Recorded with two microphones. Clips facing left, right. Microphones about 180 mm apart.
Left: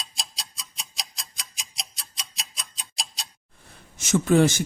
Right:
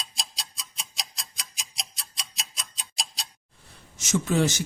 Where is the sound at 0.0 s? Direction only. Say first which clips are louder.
Even; centre (ahead or behind).